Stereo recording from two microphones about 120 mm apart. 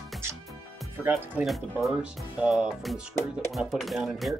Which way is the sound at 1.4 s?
Centre (ahead or behind).